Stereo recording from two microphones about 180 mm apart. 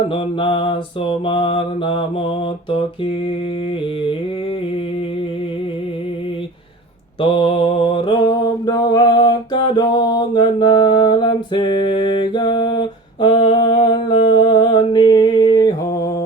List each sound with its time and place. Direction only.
0.1 s mantra: 30° left (ahead or behind)
7.2 s mantra: 30° left (ahead or behind)
13.2 s a sound: 25° left (ahead or behind)